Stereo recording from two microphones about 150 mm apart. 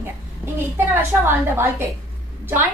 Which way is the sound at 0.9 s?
15° right (ahead or behind).